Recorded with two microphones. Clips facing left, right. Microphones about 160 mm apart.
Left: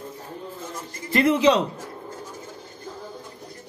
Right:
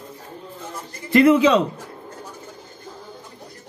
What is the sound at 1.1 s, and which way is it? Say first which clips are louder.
Speech: right 4 dB; 65° right (ahead or behind).